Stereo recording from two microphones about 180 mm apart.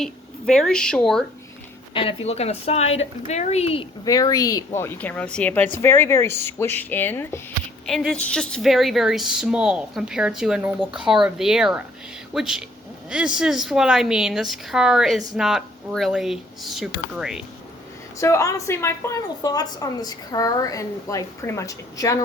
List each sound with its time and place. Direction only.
0.0 s a woman's voice: centre (ahead or behind)
1.9 s a woman's voice: 30° left (ahead or behind)
4.0 s a woman's voice: 20° left (ahead or behind); by 17.4 s 5° right (ahead or behind)
18.2 s a woman's voice: 15° left (ahead or behind)